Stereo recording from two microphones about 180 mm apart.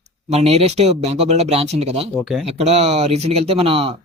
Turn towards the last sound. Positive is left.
turn(degrees=-30)  # may be behind; listen again after turning